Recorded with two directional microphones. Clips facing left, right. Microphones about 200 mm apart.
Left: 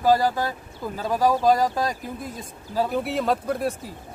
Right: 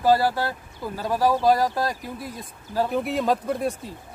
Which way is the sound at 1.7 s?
20° left (ahead or behind).